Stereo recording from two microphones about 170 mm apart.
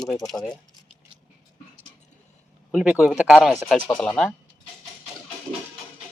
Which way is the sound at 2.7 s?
5° right (ahead or behind).